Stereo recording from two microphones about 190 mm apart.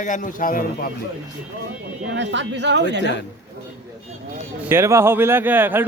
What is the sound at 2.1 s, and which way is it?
Speech, 70° right (ahead or behind).